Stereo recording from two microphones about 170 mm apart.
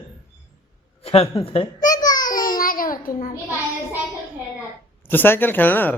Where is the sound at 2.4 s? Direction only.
55° left (ahead or behind).